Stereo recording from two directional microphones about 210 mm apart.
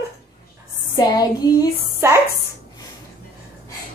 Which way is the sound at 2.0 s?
10° right (ahead or behind).